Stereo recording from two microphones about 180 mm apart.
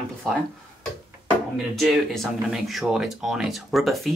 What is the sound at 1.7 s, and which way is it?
Speech, centre (ahead or behind).